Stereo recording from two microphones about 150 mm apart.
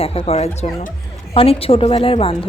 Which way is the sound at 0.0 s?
40° left (ahead or behind).